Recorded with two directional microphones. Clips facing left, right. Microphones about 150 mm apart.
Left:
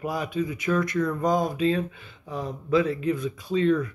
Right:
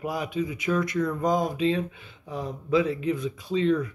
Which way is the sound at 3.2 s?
50° left (ahead or behind).